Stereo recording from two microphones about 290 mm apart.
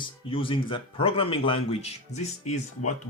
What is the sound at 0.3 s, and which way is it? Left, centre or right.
Speech, centre.